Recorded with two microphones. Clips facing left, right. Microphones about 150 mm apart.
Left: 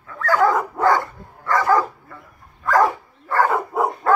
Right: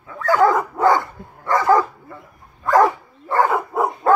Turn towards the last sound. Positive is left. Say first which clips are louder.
# even
turn(degrees=0)  # may be behind; listen again after turning